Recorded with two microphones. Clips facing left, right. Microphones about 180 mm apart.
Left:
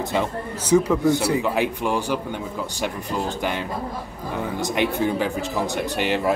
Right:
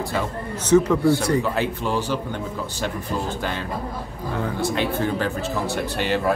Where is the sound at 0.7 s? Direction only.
10° left (ahead or behind).